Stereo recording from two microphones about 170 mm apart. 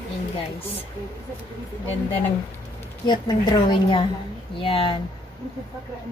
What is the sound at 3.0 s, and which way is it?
A woman's voice, 25° left (ahead or behind).